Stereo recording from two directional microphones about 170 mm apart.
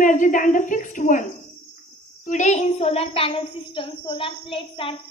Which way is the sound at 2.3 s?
45° left (ahead or behind).